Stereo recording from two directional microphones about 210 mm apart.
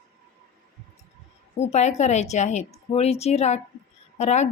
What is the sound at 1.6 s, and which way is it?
A woman's voice, 30° left (ahead or behind).